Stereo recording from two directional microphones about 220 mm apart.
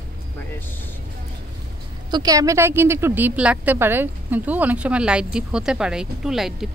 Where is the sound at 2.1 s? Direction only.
15° right (ahead or behind).